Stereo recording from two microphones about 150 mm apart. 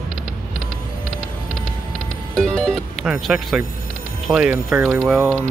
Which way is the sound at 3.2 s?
Centre (ahead or behind).